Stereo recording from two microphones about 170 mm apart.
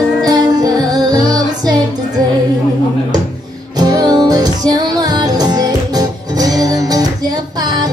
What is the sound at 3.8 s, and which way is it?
Music, 25° right (ahead or behind).